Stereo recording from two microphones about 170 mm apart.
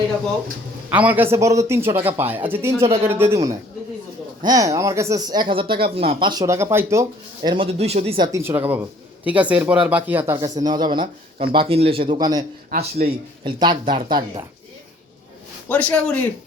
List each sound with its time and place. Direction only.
0.9 s speech: 10° right (ahead or behind)
2.8 s a man's voice: 35° right (ahead or behind)
3.1 s speech: 15° right (ahead or behind)
7.5 s a man's voice: 35° right (ahead or behind)
8.3 s speech: 15° right (ahead or behind)
10.3 s a man's voice: 20° right (ahead or behind)
13.0 s speech: 55° right (ahead or behind)
13.4 s speech: 30° right (ahead or behind)
15.7 s speech: 10° left (ahead or behind)